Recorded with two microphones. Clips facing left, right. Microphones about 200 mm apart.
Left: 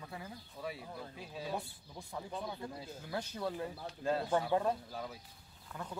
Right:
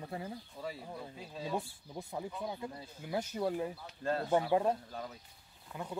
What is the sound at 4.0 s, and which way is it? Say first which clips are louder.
Speech: even; 10° left (ahead or behind).